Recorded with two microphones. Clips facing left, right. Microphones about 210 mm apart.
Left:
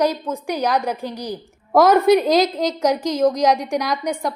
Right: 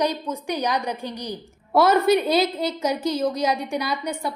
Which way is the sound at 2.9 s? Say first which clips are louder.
Left 6 dB; 90° left.